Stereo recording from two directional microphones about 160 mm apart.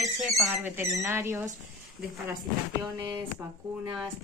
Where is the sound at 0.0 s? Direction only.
Centre (ahead or behind).